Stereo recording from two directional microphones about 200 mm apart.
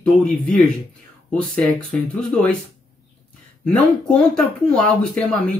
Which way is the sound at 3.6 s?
5° left (ahead or behind).